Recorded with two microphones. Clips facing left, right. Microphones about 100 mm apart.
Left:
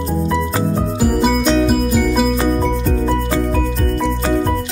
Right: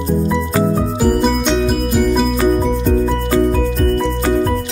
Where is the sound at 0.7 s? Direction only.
Centre (ahead or behind).